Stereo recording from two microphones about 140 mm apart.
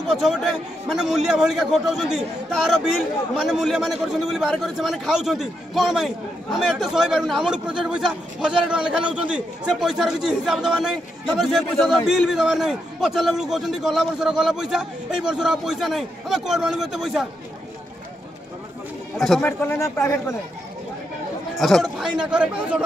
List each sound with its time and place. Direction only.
0.1 s a man's voice: centre (ahead or behind)
19.1 s a man's voice: centre (ahead or behind)
19.4 s speech: 15° left (ahead or behind)
21.5 s a man's voice: centre (ahead or behind)